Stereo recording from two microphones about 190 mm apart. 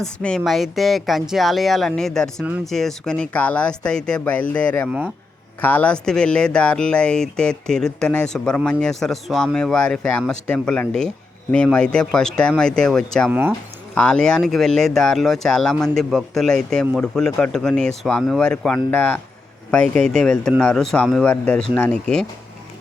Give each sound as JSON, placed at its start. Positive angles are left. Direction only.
{"t": 0.0, "sound": "speech", "side_deg": 5}